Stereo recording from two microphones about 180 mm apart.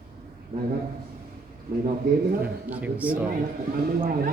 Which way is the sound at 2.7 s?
10° right (ahead or behind).